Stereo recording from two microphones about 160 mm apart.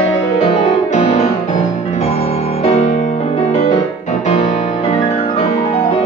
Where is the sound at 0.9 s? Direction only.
45° left (ahead or behind).